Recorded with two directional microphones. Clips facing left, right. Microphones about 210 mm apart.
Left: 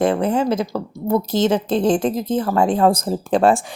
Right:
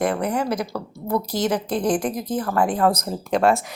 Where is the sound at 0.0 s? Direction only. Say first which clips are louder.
Left 5 dB; 25° left (ahead or behind).